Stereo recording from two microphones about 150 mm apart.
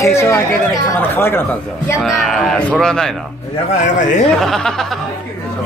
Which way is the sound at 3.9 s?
55° left (ahead or behind).